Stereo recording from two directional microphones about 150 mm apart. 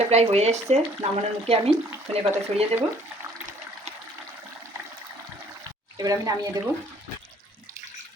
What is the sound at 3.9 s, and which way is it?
Toilet flush, 45° right (ahead or behind).